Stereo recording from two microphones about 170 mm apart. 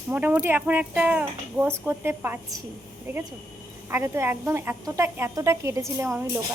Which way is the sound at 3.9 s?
15° right (ahead or behind).